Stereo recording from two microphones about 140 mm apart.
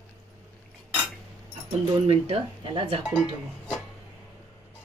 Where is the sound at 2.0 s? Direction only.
45° right (ahead or behind).